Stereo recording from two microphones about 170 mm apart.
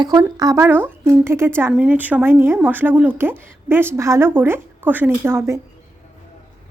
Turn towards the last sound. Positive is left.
turn(degrees=-15)  # may be behind; listen again after turning